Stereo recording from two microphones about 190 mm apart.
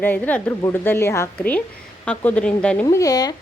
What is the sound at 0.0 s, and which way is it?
A woman's voice, 10° left (ahead or behind).